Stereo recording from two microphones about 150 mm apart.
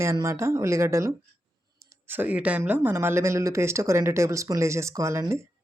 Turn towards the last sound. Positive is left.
turn(degrees=-20)  # may be behind; listen again after turning